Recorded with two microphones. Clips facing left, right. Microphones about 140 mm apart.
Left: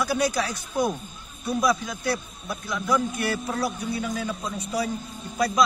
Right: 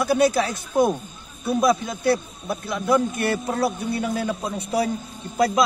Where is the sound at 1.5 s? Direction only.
25° right (ahead or behind).